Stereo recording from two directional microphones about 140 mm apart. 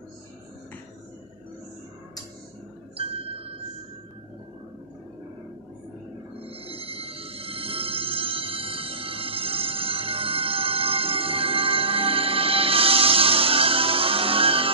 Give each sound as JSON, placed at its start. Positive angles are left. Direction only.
{"t": 3.0, "sound": "glass", "side_deg": -45}
{"t": 6.4, "sound": "music", "side_deg": -45}